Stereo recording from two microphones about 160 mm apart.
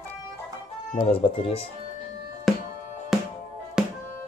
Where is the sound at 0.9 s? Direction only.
40° left (ahead or behind).